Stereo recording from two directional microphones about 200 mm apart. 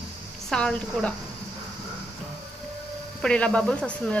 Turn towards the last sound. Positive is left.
turn(degrees=5)  # may be behind; listen again after turning